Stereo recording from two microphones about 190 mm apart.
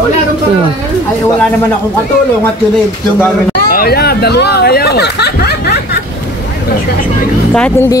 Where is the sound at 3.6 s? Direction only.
50° left (ahead or behind).